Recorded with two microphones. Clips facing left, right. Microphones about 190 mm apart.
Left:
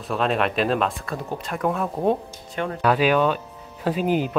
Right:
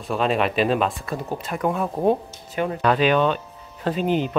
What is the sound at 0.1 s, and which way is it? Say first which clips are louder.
Speech: right 1 dB; centre (ahead or behind).